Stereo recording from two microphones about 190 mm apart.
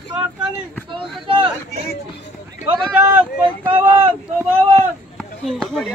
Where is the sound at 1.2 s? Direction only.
25° right (ahead or behind).